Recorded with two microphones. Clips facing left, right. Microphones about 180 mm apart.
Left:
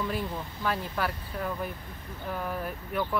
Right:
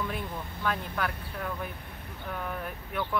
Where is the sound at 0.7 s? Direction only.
5° left (ahead or behind).